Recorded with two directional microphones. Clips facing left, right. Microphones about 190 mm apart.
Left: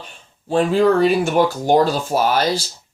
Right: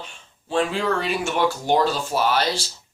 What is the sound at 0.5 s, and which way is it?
Speech, 50° left (ahead or behind).